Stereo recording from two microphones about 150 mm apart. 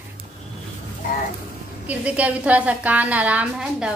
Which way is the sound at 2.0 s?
10° right (ahead or behind).